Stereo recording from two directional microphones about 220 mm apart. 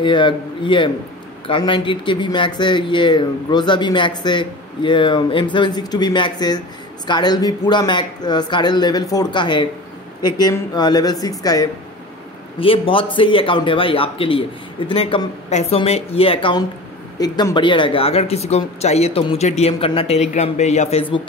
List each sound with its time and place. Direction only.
0.0 s speech: 20° left (ahead or behind)